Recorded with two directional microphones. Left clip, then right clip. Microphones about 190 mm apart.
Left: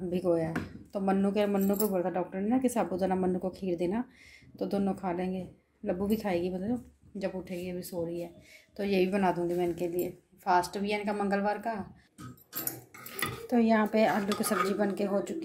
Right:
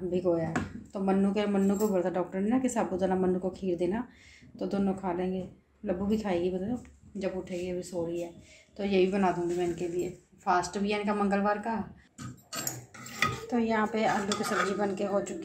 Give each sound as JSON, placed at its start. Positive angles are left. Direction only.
{"t": 0.1, "sound": "a woman's voice", "side_deg": 35}
{"t": 13.5, "sound": "a woman's voice", "side_deg": 30}